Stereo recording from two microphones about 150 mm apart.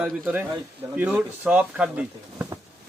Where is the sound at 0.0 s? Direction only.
10° right (ahead or behind).